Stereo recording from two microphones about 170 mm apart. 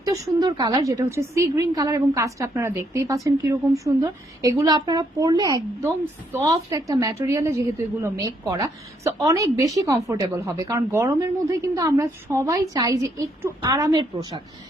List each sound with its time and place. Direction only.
0.0 s a woman's voice: 20° right (ahead or behind)